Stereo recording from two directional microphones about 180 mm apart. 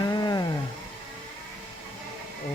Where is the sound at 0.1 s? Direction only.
20° left (ahead or behind).